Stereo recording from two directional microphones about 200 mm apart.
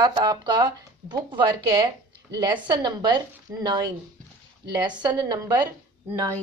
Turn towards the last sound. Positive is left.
turn(degrees=-15)  # may be behind; listen again after turning